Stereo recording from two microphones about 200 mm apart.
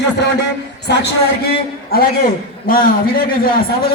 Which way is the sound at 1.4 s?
50° left (ahead or behind).